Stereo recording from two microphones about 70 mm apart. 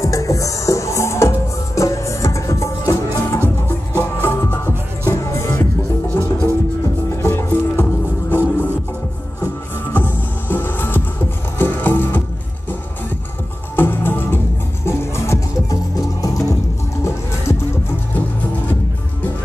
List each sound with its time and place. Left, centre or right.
0.0 s music: left
3.3 s music: left
9.9 s music: left
13.7 s music: left
15.7 s music: left